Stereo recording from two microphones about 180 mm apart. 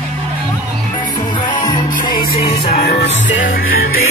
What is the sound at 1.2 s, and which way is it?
Music, 25° left (ahead or behind).